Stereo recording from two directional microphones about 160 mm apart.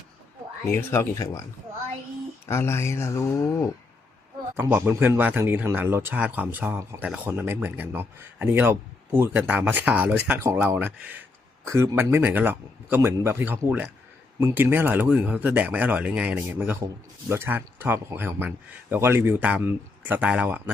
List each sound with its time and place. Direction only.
0.7 s speech: 15° left (ahead or behind)
2.5 s speech: 15° left (ahead or behind)
4.5 s speech: 15° right (ahead or behind)